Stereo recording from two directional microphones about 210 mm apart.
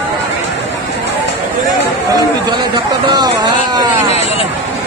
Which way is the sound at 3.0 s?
20° right (ahead or behind).